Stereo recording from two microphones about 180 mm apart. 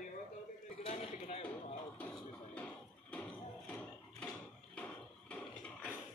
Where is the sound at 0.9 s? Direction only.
35° left (ahead or behind).